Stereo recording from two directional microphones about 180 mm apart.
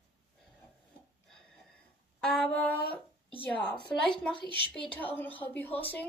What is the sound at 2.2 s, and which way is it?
Speech, 5° left (ahead or behind).